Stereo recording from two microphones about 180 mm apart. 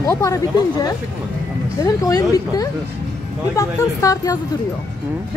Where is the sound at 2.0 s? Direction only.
20° left (ahead or behind).